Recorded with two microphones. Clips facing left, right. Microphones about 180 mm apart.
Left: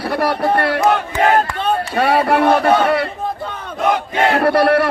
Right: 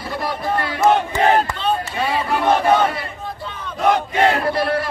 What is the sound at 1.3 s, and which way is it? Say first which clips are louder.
Speech: left 2 dB; 55° left (ahead or behind).